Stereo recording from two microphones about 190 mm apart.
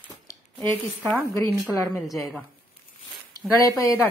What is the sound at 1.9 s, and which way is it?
Speech, centre (ahead or behind).